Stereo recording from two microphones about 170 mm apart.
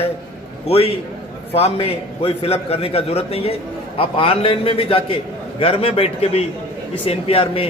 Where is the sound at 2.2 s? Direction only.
35° left (ahead or behind).